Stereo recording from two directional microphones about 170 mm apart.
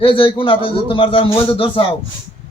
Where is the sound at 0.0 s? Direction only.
30° left (ahead or behind).